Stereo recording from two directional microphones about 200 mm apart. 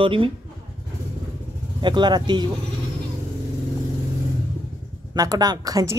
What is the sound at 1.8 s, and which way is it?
Speech, 20° right (ahead or behind).